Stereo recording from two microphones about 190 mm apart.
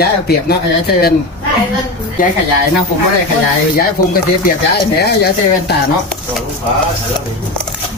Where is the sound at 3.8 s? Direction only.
50° left (ahead or behind).